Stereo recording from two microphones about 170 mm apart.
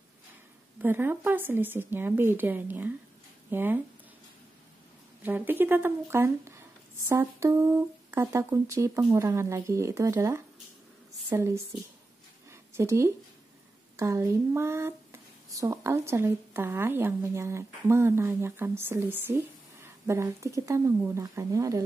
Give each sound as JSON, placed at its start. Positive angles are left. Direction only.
{"t": 0.7, "sound": "a woman's voice", "side_deg": -10}
{"t": 5.2, "sound": "a woman's voice", "side_deg": -10}
{"t": 12.4, "sound": "a sound", "side_deg": -15}
{"t": 13.9, "sound": "a woman's voice", "side_deg": -15}